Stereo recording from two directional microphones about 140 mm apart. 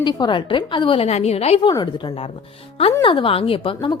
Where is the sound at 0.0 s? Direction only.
30° left (ahead or behind).